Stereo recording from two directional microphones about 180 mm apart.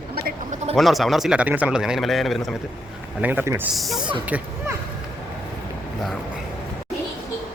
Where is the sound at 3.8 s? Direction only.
Centre (ahead or behind).